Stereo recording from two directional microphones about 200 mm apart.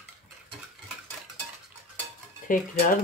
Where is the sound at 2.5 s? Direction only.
40° left (ahead or behind).